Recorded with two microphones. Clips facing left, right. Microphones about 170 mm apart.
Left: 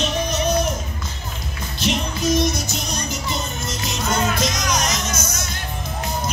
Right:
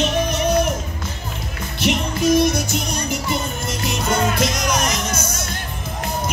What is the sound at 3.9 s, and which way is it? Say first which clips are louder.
Music: right 2 dB; 55° right (ahead or behind).